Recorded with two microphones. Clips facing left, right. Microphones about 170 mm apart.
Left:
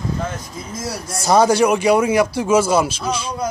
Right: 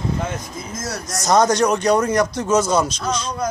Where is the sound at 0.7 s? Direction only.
30° left (ahead or behind).